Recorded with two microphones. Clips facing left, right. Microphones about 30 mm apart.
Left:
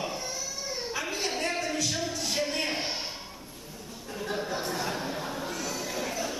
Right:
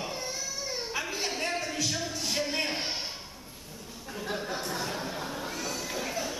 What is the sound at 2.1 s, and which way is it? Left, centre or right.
Music, centre.